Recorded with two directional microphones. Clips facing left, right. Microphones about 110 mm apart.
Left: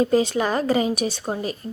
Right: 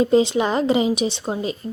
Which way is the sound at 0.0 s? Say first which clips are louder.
Right 3 dB; 20° right (ahead or behind).